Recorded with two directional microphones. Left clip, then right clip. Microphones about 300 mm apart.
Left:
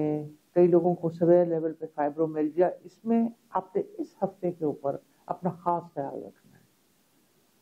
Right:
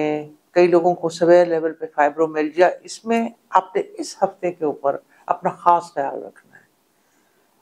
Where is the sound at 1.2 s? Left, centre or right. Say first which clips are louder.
Right 8 dB; centre.